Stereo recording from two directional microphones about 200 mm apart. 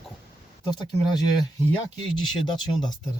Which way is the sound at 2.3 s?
20° left (ahead or behind).